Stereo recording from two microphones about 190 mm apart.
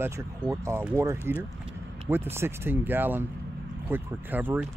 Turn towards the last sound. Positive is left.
turn(degrees=-10)  # may be behind; listen again after turning